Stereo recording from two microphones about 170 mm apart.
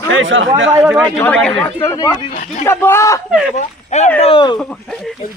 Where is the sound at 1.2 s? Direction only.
10° left (ahead or behind).